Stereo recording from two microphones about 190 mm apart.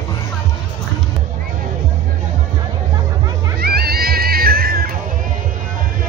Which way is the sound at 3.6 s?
55° right (ahead or behind).